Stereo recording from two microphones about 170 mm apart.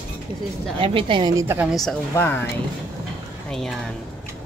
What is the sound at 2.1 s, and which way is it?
Speech, 15° left (ahead or behind).